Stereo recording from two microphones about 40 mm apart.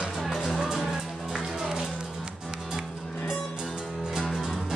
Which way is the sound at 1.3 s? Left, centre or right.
Centre.